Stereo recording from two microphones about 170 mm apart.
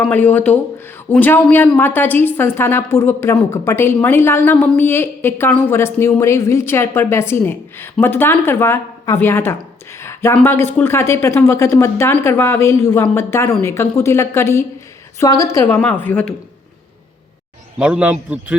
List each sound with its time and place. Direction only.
0.1 s a woman's voice: 10° left (ahead or behind)
10.0 s a sound: 15° left (ahead or behind)
10.3 s a woman's voice: 15° left (ahead or behind)
17.7 s a man's voice: 5° right (ahead or behind)